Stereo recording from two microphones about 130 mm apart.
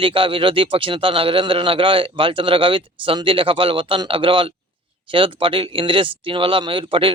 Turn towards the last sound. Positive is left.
turn(degrees=-40)  # may be behind; listen again after turning